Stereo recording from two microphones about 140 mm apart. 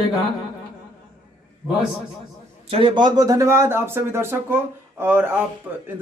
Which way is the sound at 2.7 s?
40° right (ahead or behind).